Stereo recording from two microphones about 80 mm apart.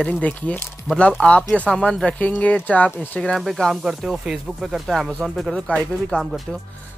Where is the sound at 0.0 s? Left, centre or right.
Centre.